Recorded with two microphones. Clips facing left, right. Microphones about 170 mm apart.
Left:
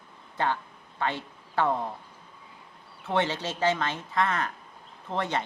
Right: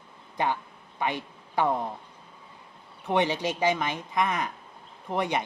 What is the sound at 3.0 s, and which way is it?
Speech, 15° right (ahead or behind).